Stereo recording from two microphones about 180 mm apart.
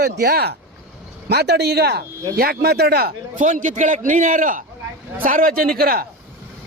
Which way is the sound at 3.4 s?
45° right (ahead or behind).